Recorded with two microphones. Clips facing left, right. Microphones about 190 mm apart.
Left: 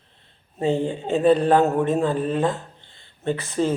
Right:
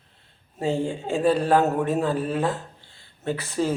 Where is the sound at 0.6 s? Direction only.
5° right (ahead or behind).